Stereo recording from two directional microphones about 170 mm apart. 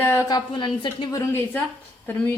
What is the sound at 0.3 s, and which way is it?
Speech, 25° left (ahead or behind).